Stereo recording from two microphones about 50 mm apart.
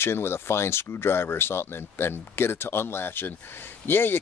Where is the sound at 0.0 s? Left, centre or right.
Left.